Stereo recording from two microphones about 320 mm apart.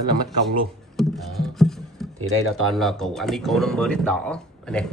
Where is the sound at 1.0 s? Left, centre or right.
Centre.